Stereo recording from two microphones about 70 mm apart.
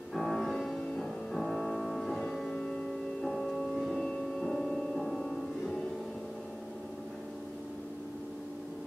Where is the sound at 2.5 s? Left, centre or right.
Centre.